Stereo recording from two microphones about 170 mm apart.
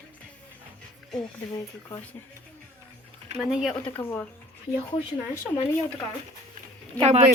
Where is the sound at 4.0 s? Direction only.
15° left (ahead or behind).